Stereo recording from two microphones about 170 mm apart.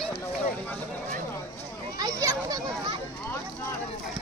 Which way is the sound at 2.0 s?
20° right (ahead or behind).